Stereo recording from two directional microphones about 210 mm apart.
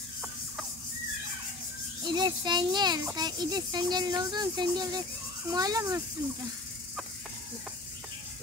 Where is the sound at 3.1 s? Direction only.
20° right (ahead or behind).